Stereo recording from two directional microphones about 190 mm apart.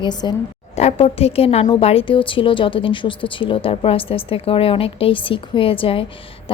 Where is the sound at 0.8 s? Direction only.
35° left (ahead or behind).